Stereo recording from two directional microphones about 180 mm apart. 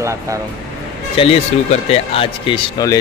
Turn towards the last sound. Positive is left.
turn(degrees=20)  # may be behind; listen again after turning